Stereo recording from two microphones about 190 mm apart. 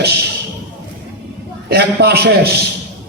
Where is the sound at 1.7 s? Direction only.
60° right (ahead or behind).